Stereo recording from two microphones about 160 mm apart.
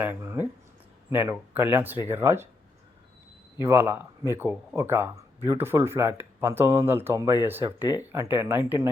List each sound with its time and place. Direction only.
0.0 s speech: 15° right (ahead or behind)
3.6 s speech: 15° right (ahead or behind)